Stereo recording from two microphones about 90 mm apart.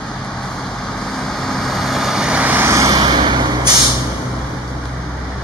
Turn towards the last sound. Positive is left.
turn(degrees=-55)  # may be behind; listen again after turning